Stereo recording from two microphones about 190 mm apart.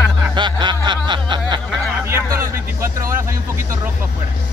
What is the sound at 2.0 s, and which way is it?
Speech, 15° right (ahead or behind).